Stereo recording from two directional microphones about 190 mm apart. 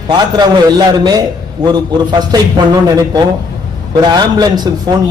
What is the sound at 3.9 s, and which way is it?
A man's voice, 20° right (ahead or behind).